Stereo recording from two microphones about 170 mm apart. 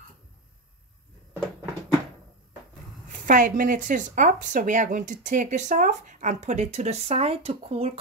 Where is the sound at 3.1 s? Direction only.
50° right (ahead or behind); by 8.0 s 35° right (ahead or behind).